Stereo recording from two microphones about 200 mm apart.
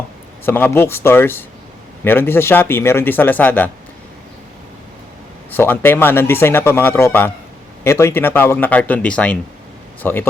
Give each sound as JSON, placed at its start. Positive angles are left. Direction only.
{"t": 0.4, "sound": "speech", "side_deg": 10}
{"t": 5.5, "sound": "speech", "side_deg": 10}